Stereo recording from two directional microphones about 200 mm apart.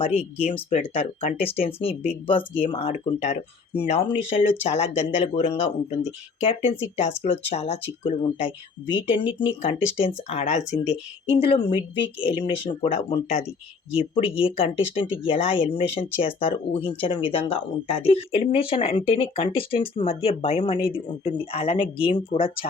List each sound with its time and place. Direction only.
0.0 s speech: 30° left (ahead or behind)
7.0 s speech: 35° left (ahead or behind)